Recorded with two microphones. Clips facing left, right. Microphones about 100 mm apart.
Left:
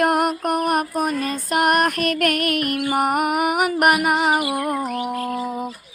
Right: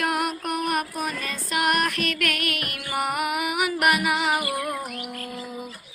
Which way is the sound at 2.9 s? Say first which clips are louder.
Left 4 dB; 50° left (ahead or behind).